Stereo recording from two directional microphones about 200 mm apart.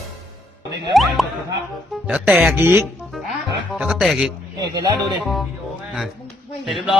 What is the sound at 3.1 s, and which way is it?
Music, centre (ahead or behind).